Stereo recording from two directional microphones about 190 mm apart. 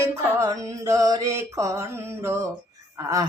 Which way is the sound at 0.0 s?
15° right (ahead or behind).